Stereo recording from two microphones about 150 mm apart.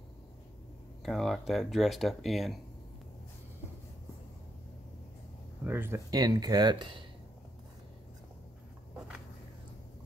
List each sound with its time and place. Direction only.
1.0 s speech: centre (ahead or behind)
5.6 s speech: 15° right (ahead or behind)
6.0 s speech: 25° right (ahead or behind)